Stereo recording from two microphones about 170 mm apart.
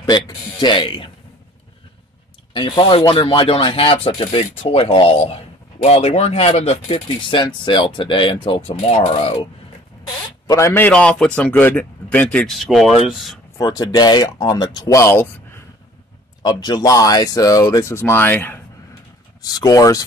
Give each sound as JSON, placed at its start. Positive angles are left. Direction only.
{"t": 0.0, "sound": "speech", "side_deg": 25}
{"t": 2.5, "sound": "speech", "side_deg": 30}
{"t": 10.0, "sound": "speech", "side_deg": 15}
{"t": 13.6, "sound": "speech", "side_deg": 25}
{"t": 16.4, "sound": "speech", "side_deg": 25}